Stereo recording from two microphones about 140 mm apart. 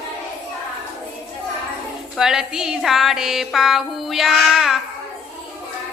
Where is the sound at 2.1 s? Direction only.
5° right (ahead or behind).